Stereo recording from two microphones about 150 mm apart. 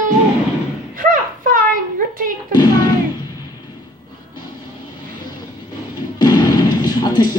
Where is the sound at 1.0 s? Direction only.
65° right (ahead or behind).